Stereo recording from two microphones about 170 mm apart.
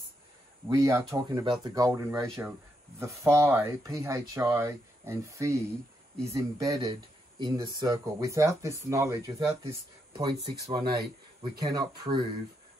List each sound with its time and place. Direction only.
0.7 s speech: 20° right (ahead or behind)